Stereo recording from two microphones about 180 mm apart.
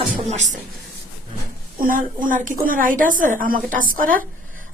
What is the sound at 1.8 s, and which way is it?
A woman's voice, 50° right (ahead or behind).